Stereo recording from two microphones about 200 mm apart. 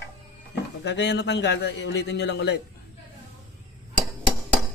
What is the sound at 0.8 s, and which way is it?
A man's voice, 60° left (ahead or behind).